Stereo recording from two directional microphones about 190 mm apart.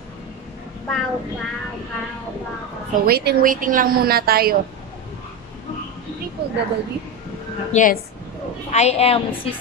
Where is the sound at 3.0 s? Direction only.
55° right (ahead or behind).